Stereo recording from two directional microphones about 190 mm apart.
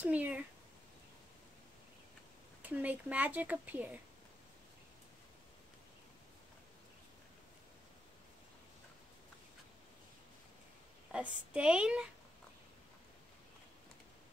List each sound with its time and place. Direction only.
0.0 s speech: 10° right (ahead or behind)
2.6 s speech: 10° right (ahead or behind)
11.1 s a woman's voice: 5° right (ahead or behind)